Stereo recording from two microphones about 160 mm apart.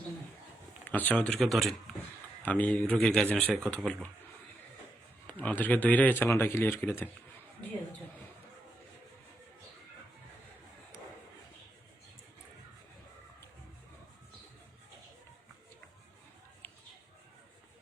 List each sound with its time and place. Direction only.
0.9 s speech: 10° left (ahead or behind)
5.2 s speech: 10° left (ahead or behind)
16.6 s a sound: 15° left (ahead or behind)